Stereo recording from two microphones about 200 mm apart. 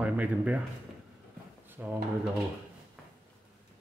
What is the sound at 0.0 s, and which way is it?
Speech, 5° right (ahead or behind).